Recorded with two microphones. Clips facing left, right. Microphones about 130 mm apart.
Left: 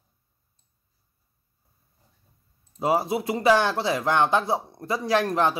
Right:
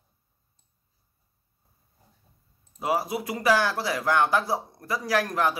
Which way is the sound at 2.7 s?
25° left (ahead or behind).